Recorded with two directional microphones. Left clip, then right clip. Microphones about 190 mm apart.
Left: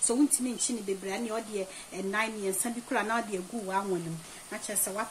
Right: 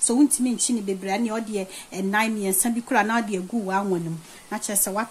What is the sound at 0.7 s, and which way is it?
Speech, 50° right (ahead or behind).